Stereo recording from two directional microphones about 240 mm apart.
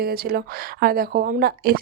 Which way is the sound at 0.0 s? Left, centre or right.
Right.